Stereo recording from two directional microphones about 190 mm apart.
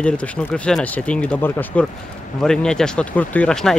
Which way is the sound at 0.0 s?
5° left (ahead or behind).